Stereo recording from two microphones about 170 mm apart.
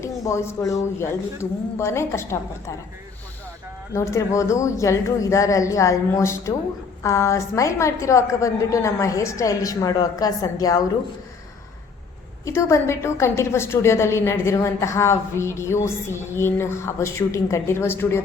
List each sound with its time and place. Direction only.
0.0 s a woman's voice: 15° left (ahead or behind)
3.9 s a woman's voice: 15° left (ahead or behind)
12.5 s a woman's voice: 15° left (ahead or behind)